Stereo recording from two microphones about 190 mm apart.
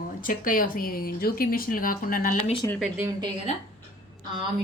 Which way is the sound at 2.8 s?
10° right (ahead or behind).